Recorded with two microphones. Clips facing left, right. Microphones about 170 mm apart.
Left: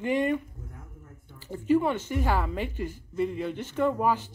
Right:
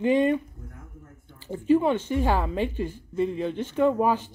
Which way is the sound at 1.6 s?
20° right (ahead or behind).